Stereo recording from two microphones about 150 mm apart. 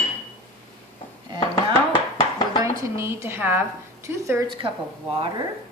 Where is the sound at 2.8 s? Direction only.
15° right (ahead or behind).